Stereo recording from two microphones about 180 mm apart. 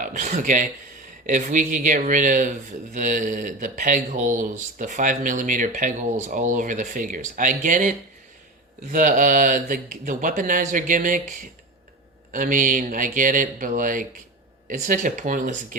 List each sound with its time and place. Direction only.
0.0 s speech: 45° right (ahead or behind)